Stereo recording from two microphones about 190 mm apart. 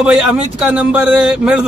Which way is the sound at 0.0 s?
5° right (ahead or behind).